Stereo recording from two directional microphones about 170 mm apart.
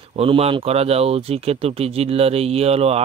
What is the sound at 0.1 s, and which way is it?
Speech, 35° right (ahead or behind).